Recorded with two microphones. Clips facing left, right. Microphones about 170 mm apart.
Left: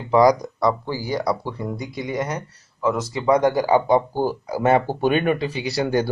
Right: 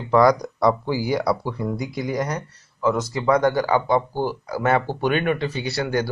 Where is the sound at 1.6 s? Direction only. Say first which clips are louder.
Right 2 dB; centre (ahead or behind).